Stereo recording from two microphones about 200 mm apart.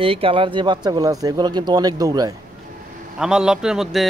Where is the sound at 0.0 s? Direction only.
25° right (ahead or behind).